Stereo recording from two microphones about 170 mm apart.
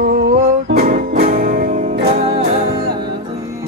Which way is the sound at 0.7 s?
60° right (ahead or behind).